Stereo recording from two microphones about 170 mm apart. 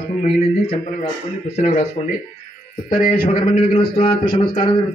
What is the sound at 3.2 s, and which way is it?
Speech, 30° left (ahead or behind).